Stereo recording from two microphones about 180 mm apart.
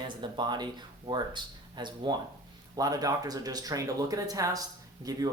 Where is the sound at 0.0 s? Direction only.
25° right (ahead or behind).